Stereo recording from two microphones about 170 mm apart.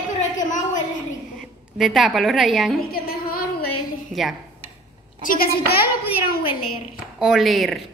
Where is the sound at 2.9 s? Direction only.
60° left (ahead or behind).